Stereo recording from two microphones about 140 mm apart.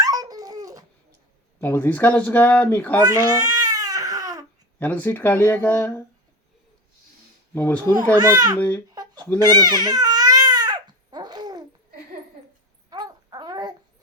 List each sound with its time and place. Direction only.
0.0 s dog: 25° right (ahead or behind)
1.6 s speech: 15° left (ahead or behind)
3.0 s speech: 25° right (ahead or behind)
3.5 s crying: 25° right (ahead or behind)
4.8 s speech: 10° left (ahead or behind)
7.5 s speech: 15° left (ahead or behind)
8.1 s speech: 25° right (ahead or behind)
8.5 s speech: 15° left (ahead or behind)
9.6 s baby cry: 30° right (ahead or behind)
12.9 s a sound: 25° right (ahead or behind)